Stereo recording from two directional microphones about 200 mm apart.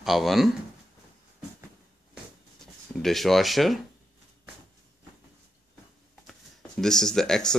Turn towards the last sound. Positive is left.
turn(degrees=5)  # may be behind; listen again after turning